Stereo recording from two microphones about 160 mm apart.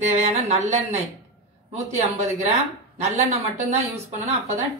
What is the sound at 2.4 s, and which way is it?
Speech, 40° right (ahead or behind).